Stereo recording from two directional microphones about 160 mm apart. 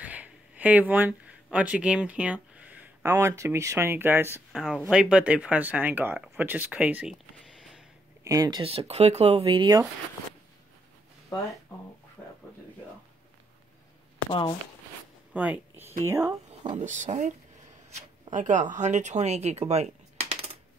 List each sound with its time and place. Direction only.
0.0 s speech: 10° right (ahead or behind)
4.5 s speech: centre (ahead or behind)
8.2 s speech: 20° right (ahead or behind)
15.3 s speech: 10° right (ahead or behind)
16.7 s speech: 50° right (ahead or behind)